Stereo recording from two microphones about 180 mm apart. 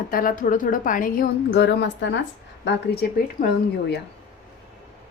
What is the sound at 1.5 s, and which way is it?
Speech, 75° left (ahead or behind).